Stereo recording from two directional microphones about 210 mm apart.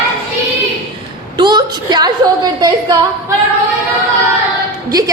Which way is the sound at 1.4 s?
20° right (ahead or behind).